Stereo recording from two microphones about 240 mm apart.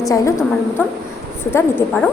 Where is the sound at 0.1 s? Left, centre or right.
Centre.